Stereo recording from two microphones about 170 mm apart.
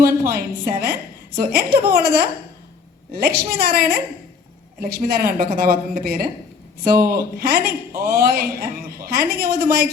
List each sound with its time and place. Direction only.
0.0 s a woman's voice: 60° right (ahead or behind)
7.3 s a woman's voice: 60° right (ahead or behind)